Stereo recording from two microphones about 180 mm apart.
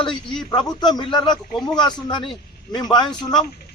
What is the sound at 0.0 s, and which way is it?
A man's voice, 25° left (ahead or behind).